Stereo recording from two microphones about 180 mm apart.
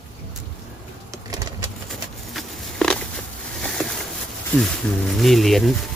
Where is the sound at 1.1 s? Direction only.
20° right (ahead or behind).